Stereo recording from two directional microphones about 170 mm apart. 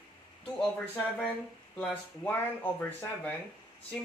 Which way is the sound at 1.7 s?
10° left (ahead or behind).